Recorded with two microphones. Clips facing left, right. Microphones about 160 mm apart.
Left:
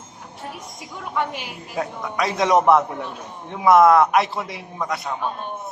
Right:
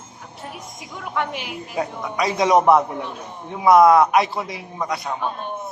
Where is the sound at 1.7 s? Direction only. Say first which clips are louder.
Right 1 dB; centre (ahead or behind).